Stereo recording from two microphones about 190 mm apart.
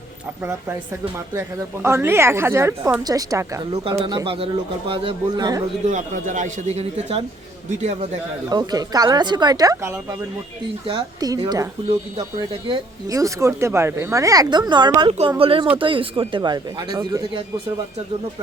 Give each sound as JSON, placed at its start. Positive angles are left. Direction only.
{"t": 1.3, "sound": "speech", "side_deg": -15}
{"t": 5.9, "sound": "speech", "side_deg": -40}
{"t": 8.4, "sound": "speech", "side_deg": -20}